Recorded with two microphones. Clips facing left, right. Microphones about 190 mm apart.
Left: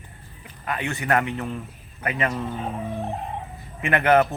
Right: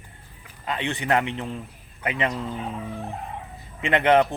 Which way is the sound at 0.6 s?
25° right (ahead or behind).